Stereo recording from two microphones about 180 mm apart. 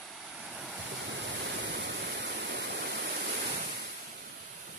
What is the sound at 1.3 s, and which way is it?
Waterfall, 75° right (ahead or behind).